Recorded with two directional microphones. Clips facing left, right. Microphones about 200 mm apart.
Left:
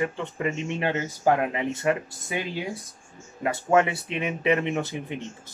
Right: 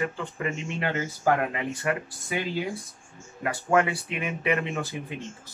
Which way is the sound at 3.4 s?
20° left (ahead or behind).